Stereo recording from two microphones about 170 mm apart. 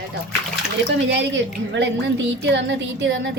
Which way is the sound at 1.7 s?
90° right.